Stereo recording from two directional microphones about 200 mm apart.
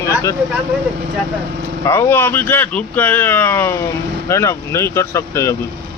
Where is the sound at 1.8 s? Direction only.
15° left (ahead or behind).